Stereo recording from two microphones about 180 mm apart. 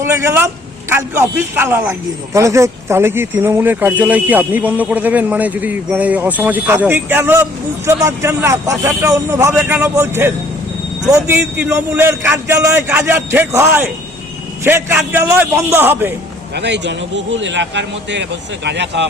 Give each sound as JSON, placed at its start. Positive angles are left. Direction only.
{"t": 0.0, "sound": "a man's voice", "side_deg": -15}
{"t": 16.6, "sound": "a man's voice", "side_deg": -70}